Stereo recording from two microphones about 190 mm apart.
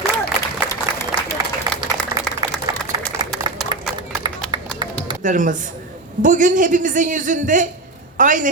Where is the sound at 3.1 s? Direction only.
15° right (ahead or behind).